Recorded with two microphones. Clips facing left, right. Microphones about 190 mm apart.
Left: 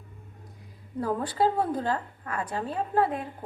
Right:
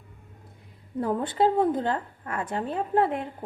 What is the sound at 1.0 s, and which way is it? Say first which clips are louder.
A woman's voice: right 2 dB; 25° right (ahead or behind).